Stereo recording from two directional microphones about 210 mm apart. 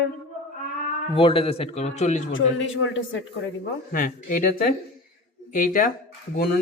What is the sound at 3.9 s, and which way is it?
A woman's voice, 40° left (ahead or behind).